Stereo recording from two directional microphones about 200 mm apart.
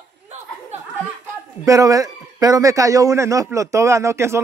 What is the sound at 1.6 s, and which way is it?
Speech, 15° right (ahead or behind).